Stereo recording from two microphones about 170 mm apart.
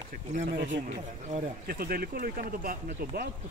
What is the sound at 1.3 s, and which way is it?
Speech, 55° right (ahead or behind).